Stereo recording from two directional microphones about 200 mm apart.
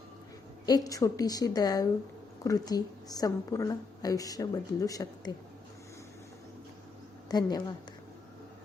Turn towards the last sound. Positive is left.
turn(degrees=20)  # may be behind; listen again after turning